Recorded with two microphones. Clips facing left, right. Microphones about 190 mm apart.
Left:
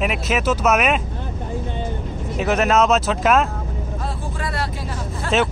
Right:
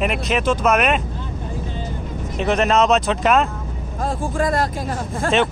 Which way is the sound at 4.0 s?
45° right (ahead or behind).